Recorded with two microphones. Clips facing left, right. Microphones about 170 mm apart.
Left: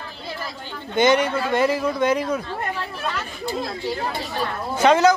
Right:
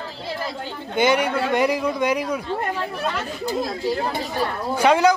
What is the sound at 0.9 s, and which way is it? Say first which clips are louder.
Speech: left 1 dB; 10° right (ahead or behind).